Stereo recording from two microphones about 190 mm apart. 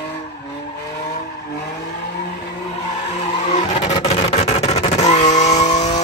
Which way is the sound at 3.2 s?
35° left (ahead or behind).